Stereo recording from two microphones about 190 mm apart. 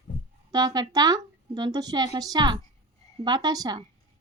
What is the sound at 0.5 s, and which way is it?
Speech, 20° right (ahead or behind).